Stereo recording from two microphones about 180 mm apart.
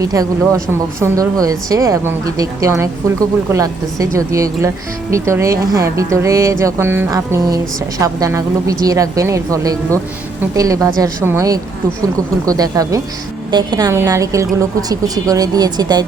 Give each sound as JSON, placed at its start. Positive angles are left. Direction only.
{"t": 0.0, "sound": "a woman's voice", "side_deg": -20}